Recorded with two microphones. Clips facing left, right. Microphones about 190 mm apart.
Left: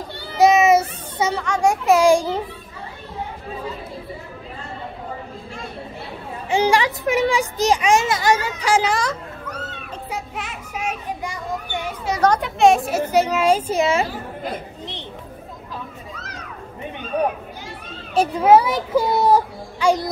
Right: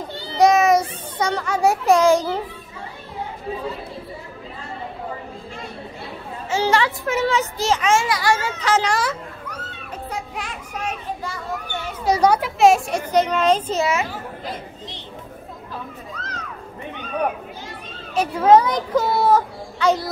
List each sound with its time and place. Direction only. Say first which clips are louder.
0.4 s a sound: left 1 dB; centre (ahead or behind)
1.4 s speech: right 2 dB; 5° right (ahead or behind)
2.0 s a child's voice: left 1 dB; 10° left (ahead or behind)
6.5 s a child's voice: left 2 dB; 15° left (ahead or behind)
10.1 s children playing: left 1 dB; 5° left (ahead or behind)
12.2 s a child's voice: even; 5° right (ahead or behind)
14.4 s chatter: left 3 dB; 60° left (ahead or behind)
16.2 s music: right 2 dB; 10° left (ahead or behind)
18.3 s a child's voice: right 1 dB; 10° left (ahead or behind)